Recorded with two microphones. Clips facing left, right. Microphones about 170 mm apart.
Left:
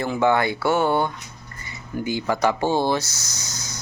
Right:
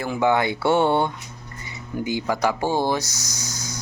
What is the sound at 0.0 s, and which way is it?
Speech, 10° right (ahead or behind).